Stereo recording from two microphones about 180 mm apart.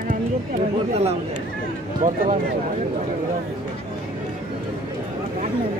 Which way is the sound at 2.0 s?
50° right (ahead or behind).